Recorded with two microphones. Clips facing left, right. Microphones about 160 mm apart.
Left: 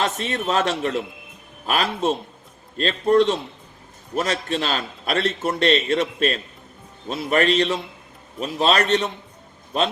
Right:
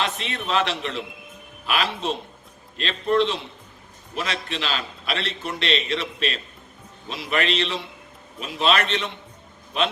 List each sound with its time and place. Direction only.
0.0 s a man's voice: 45° left (ahead or behind)